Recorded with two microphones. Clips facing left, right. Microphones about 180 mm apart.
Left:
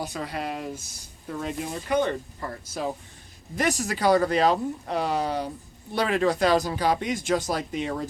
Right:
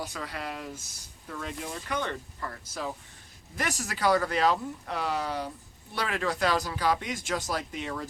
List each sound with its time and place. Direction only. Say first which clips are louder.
0.0 s speech: left 5 dB; 15° left (ahead or behind)
3.6 s speech: left 5 dB; 15° left (ahead or behind)